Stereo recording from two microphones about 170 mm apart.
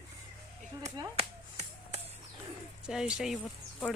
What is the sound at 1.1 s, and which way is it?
Finger snapping, 35° right (ahead or behind).